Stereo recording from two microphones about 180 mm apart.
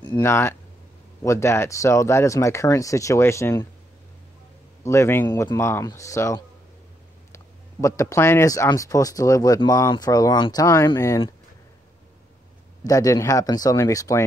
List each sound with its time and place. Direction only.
0.2 s speech: 15° left (ahead or behind)
4.8 s speech: 15° left (ahead or behind)
12.8 s speech: 20° left (ahead or behind)